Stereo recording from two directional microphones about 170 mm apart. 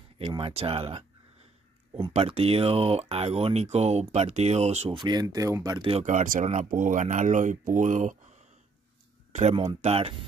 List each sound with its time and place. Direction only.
0.2 s speech: 30° right (ahead or behind)
2.1 s speech: 35° right (ahead or behind); by 5.8 s 20° right (ahead or behind)
5.8 s speech: 35° right (ahead or behind)
9.3 s speech: 45° right (ahead or behind)